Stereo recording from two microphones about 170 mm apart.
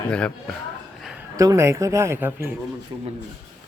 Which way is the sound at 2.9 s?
25° right (ahead or behind).